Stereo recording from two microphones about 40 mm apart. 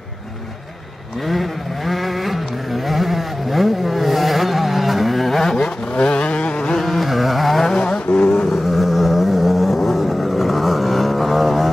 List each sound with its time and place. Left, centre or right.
1.2 s a sound: centre
5.9 s vehicle: left
6.8 s carnatic music: centre
7.9 s vehicle: left
8.5 s vehicle: centre